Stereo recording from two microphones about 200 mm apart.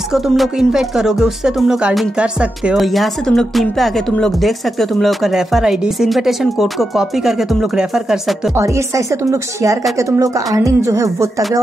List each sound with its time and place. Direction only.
0.1 s speech: centre (ahead or behind)
8.5 s a woman's voice: 15° right (ahead or behind)